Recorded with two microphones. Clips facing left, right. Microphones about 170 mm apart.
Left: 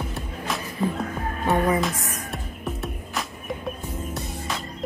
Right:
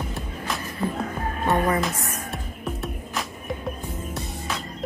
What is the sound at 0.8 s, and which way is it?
Speech, 15° left (ahead or behind).